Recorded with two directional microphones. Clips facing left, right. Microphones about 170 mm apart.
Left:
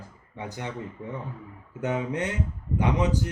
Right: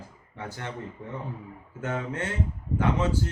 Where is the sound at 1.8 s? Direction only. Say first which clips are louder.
Left 3 dB; 15° left (ahead or behind).